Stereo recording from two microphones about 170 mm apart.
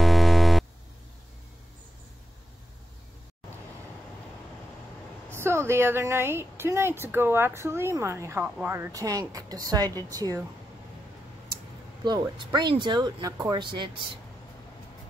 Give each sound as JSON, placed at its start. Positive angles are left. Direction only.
{"t": 0.0, "sound": "a sound", "side_deg": 0}
{"t": 5.3, "sound": "a woman's voice", "side_deg": -15}
{"t": 12.0, "sound": "speech", "side_deg": -25}